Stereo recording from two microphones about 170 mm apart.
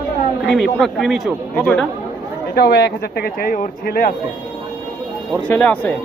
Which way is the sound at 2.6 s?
75° left (ahead or behind).